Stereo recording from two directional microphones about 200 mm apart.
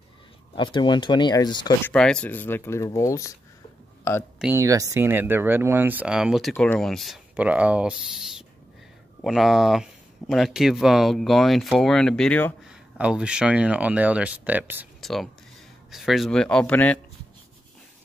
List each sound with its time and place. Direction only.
0.6 s speech: 25° left (ahead or behind)
1.9 s speech: 5° left (ahead or behind)
4.4 s speech: 10° right (ahead or behind); by 12.5 s 5° left (ahead or behind)
12.6 s speech: 5° right (ahead or behind)